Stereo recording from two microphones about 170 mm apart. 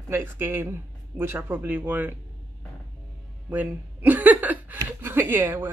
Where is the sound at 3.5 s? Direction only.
10° right (ahead or behind).